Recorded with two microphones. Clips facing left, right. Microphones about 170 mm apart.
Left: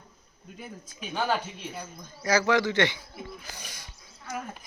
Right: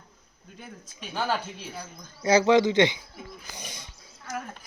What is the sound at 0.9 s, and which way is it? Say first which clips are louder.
Speech: left 1 dB; centre (ahead or behind).